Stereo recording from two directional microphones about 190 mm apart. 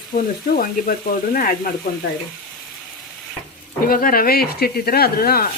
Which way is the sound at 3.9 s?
50° left (ahead or behind).